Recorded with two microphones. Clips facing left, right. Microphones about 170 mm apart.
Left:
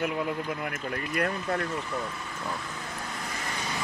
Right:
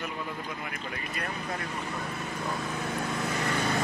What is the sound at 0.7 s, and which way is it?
Speech, 55° left (ahead or behind).